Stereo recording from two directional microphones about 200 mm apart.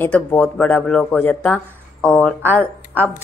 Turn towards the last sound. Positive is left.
turn(degrees=10)  # may be behind; listen again after turning